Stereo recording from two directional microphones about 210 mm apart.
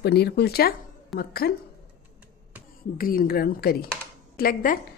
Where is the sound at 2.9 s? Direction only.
45° left (ahead or behind).